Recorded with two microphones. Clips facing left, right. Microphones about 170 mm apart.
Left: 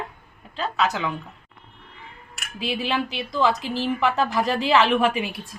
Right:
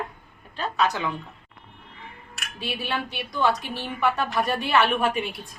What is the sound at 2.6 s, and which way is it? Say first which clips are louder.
A woman's voice: left 4 dB; 90° left.